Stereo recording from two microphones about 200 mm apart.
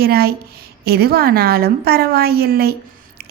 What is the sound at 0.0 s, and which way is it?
A woman's voice, 50° right (ahead or behind).